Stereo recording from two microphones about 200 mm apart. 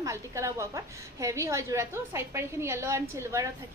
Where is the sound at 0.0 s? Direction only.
15° right (ahead or behind).